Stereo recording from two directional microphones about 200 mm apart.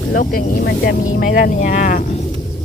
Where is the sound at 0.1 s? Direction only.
45° left (ahead or behind).